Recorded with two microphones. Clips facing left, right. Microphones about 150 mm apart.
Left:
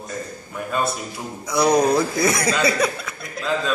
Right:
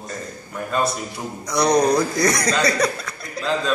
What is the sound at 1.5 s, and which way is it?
A man's voice, 5° left (ahead or behind).